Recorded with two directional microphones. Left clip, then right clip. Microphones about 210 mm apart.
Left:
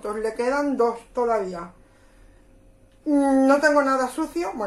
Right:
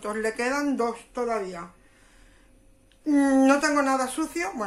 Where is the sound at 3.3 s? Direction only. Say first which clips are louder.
Left 5 dB; 40° right (ahead or behind).